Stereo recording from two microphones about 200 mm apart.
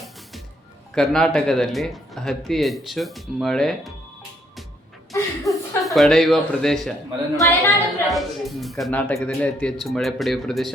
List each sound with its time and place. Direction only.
0.9 s speech: centre (ahead or behind)
5.5 s speech: centre (ahead or behind)
7.3 s speech: 15° left (ahead or behind)
8.0 s speech: centre (ahead or behind)